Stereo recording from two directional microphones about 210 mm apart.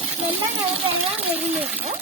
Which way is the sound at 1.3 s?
10° right (ahead or behind).